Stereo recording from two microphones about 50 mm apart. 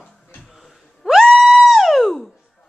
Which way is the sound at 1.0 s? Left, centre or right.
Centre.